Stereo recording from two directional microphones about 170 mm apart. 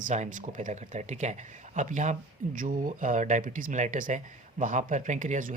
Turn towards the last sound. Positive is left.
turn(degrees=-50)  # may be behind; listen again after turning